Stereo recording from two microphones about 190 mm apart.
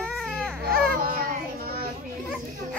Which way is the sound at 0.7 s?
50° right (ahead or behind).